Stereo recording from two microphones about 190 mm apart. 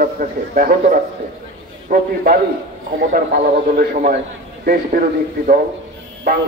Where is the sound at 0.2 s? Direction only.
50° right (ahead or behind).